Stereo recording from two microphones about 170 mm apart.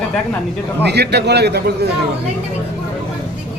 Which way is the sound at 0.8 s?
75° right (ahead or behind).